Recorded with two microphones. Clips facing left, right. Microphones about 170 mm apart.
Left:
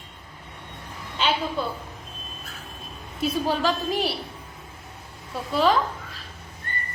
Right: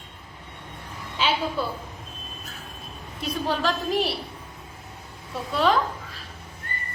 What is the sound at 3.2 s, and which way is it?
A woman's voice, centre (ahead or behind).